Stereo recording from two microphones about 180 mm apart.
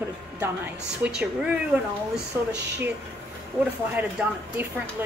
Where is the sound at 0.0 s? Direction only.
10° right (ahead or behind).